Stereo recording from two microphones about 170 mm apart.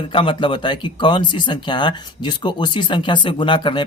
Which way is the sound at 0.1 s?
30° left (ahead or behind).